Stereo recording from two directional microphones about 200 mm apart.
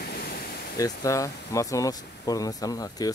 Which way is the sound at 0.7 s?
15° left (ahead or behind).